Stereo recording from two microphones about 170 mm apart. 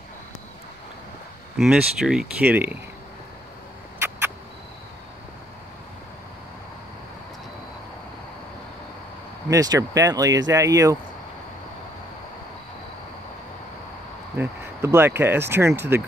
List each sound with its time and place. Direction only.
1.6 s speech: 5° right (ahead or behind)
9.5 s speech: 20° right (ahead or behind)
14.3 s speech: 15° right (ahead or behind)